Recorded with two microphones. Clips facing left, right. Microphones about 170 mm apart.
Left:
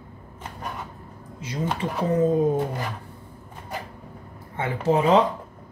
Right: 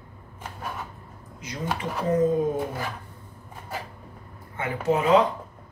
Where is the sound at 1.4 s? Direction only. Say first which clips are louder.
Left 3 dB; 30° left (ahead or behind).